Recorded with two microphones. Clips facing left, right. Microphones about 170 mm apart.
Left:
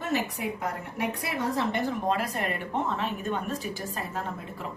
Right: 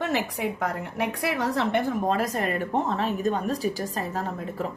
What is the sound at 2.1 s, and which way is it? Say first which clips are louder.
A woman's voice: right 3 dB; 40° right (ahead or behind).